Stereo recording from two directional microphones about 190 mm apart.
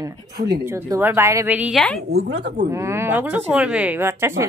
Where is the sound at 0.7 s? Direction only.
15° right (ahead or behind).